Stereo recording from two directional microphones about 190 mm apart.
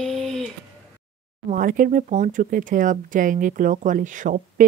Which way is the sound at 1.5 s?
45° right (ahead or behind).